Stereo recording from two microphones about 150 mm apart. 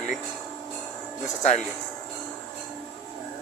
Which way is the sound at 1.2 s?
55° left (ahead or behind).